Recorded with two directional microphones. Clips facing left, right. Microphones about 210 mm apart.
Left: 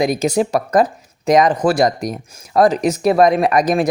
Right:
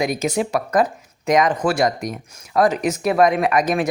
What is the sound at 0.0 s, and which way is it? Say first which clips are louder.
Speech: left 4 dB; 35° left (ahead or behind).